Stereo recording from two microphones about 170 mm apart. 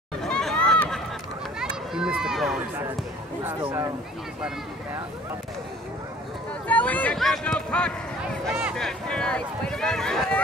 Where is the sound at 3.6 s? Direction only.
25° right (ahead or behind).